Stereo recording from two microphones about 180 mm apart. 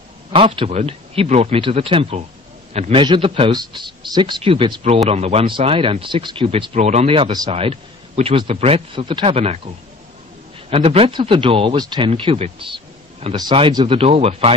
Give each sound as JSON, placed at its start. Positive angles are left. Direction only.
{"t": 0.3, "sound": "a man's voice", "side_deg": -30}
{"t": 10.7, "sound": "speech", "side_deg": -35}